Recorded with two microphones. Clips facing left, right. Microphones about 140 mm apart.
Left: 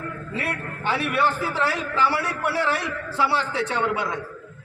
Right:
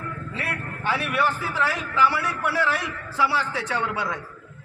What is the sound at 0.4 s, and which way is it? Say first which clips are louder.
A man's voice: left 1 dB; 25° left (ahead or behind).